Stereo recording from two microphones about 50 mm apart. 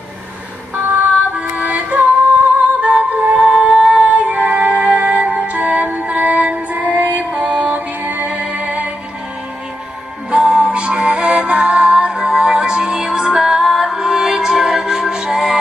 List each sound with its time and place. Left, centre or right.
0.8 s music: right
10.3 s music: centre